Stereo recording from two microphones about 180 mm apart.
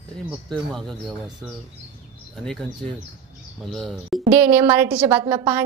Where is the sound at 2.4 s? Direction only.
Centre (ahead or behind).